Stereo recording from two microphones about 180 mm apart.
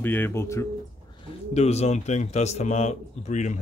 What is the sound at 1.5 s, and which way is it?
Speech, 35° left (ahead or behind).